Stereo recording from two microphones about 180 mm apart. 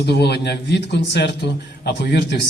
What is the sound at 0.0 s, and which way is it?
A man's voice, 65° left (ahead or behind).